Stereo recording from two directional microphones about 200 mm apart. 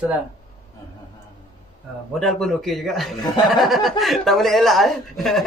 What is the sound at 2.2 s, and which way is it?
A woman's voice, centre (ahead or behind).